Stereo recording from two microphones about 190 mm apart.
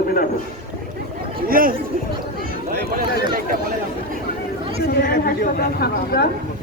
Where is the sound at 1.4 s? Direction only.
50° right (ahead or behind).